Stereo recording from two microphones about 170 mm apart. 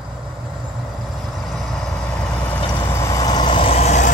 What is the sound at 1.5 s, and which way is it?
Vehicle, centre (ahead or behind).